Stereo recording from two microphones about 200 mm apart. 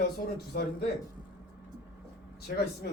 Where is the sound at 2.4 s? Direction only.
50° left (ahead or behind).